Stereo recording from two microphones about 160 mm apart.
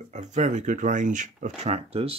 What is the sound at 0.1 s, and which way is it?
Speech, 45° right (ahead or behind).